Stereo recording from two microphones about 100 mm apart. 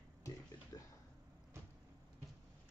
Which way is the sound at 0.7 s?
40° left (ahead or behind).